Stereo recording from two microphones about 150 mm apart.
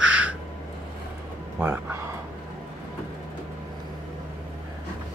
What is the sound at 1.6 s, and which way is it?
Speech, 15° right (ahead or behind).